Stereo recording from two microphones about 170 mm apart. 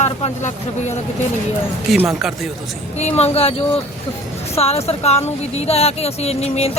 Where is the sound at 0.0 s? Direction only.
40° left (ahead or behind).